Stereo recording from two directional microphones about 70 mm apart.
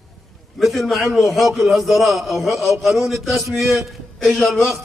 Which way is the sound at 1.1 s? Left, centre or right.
Centre.